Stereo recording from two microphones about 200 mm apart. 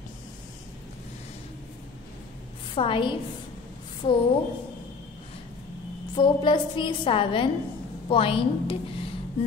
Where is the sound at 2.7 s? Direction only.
25° left (ahead or behind).